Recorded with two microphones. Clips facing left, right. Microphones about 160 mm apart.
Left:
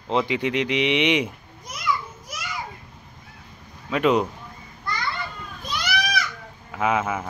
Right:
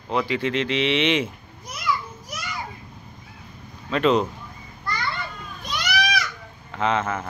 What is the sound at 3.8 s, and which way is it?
Speech, 10° left (ahead or behind).